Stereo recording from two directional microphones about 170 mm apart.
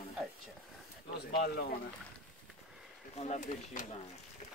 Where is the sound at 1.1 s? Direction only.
75° left (ahead or behind).